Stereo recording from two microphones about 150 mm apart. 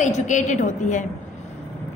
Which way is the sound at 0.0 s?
55° left (ahead or behind).